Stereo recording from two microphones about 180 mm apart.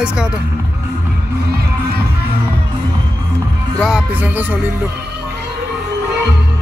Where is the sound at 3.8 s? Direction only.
5° right (ahead or behind).